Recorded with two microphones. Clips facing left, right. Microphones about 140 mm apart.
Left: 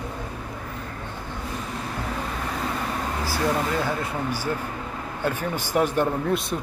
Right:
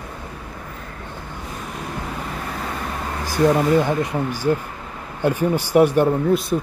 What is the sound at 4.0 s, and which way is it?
Speech, 15° right (ahead or behind).